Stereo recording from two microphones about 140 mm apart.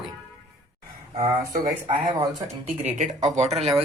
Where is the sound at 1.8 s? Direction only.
50° right (ahead or behind).